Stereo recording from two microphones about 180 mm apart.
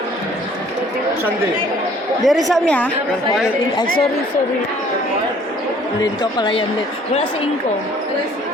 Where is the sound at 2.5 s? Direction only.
5° left (ahead or behind).